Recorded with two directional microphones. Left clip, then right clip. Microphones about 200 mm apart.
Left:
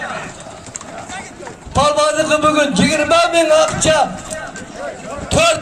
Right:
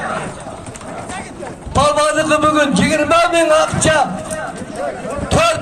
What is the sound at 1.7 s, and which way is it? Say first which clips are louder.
A man's voice: even; 20° right (ahead or behind).